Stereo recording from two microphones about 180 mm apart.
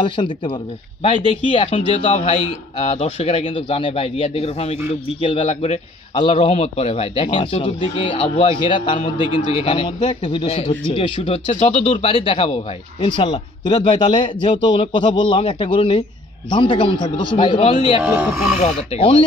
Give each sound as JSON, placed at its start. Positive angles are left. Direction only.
{"t": 0.0, "sound": "a man's voice", "side_deg": 25}
{"t": 18.0, "sound": "speech", "side_deg": -5}
{"t": 18.6, "sound": "a man's voice", "side_deg": 35}